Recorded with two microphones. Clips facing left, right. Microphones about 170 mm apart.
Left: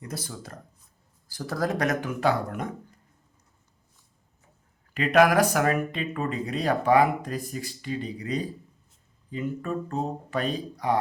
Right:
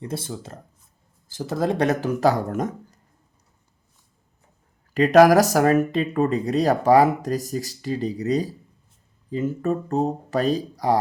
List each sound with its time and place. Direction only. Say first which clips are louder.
0.0 s speech: right 6 dB; 25° right (ahead or behind); by 3.0 s 45° right (ahead or behind)
4.9 s speech: right 6 dB; 40° right (ahead or behind)